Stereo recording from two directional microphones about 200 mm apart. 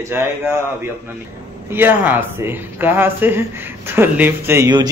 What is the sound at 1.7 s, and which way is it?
Speech, 10° right (ahead or behind).